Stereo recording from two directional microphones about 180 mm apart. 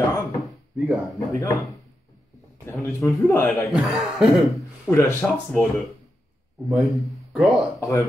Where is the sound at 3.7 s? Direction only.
Centre (ahead or behind).